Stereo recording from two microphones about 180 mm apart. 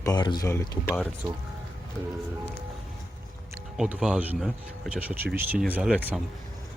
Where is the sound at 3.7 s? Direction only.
5° right (ahead or behind).